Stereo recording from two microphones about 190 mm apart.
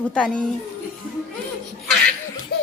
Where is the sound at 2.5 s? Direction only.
55° left (ahead or behind).